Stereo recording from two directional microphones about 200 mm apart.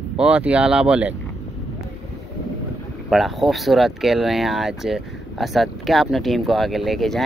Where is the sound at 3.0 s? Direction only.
Centre (ahead or behind).